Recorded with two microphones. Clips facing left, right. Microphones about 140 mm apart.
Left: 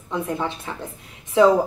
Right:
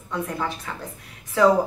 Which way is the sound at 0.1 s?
25° left (ahead or behind).